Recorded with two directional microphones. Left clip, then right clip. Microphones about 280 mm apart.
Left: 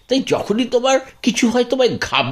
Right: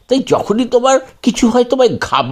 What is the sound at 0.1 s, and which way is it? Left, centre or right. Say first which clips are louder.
Speech: right 4 dB; centre.